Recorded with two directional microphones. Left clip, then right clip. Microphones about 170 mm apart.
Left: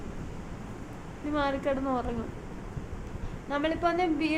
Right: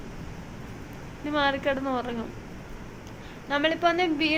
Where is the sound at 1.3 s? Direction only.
5° left (ahead or behind).